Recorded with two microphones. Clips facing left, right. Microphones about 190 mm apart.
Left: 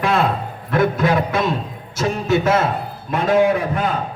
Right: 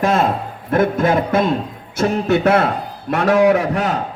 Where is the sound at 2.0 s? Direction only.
65° right (ahead or behind).